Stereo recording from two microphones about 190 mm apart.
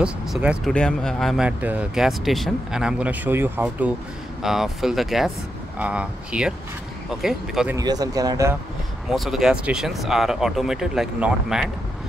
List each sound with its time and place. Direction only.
0.0 s speech: 5° right (ahead or behind)
7.7 s speech: 20° right (ahead or behind)
9.1 s speech: centre (ahead or behind)